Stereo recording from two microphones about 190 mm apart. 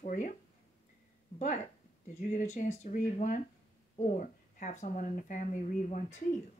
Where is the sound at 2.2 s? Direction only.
40° left (ahead or behind).